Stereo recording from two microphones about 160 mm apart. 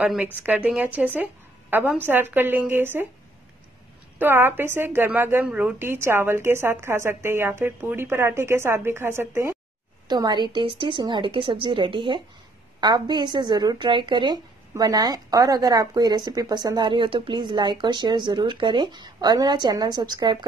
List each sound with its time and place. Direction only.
0.0 s a woman's voice: 10° right (ahead or behind)
4.2 s a woman's voice: 15° right (ahead or behind)
10.0 s a woman's voice: 25° right (ahead or behind)